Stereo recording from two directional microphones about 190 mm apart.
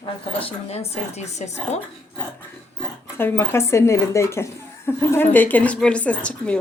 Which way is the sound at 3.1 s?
10° left (ahead or behind).